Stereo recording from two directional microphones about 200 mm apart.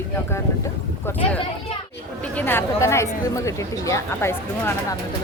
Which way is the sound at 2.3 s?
10° left (ahead or behind).